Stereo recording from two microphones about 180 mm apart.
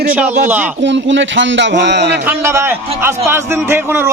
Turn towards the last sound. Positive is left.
turn(degrees=-10)  # may be behind; listen again after turning